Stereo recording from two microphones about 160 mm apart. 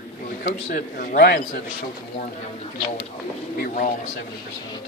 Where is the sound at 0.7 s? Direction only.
60° left (ahead or behind).